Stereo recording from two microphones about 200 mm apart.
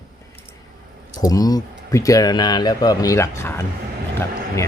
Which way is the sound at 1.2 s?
20° left (ahead or behind).